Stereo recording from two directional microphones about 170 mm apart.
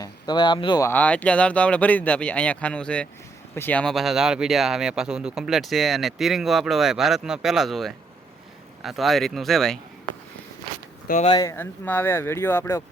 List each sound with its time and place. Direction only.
0.0 s speech: 25° left (ahead or behind)
0.9 s speech: 10° left (ahead or behind)
11.3 s speech: 20° left (ahead or behind)
11.5 s speech: 10° left (ahead or behind)